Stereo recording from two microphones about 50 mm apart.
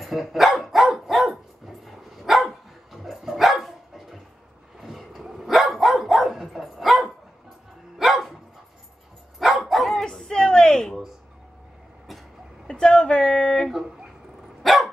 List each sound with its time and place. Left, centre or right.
0.0 s dog: centre
9.4 s dog: centre
12.6 s a sound: centre
14.6 s dog: centre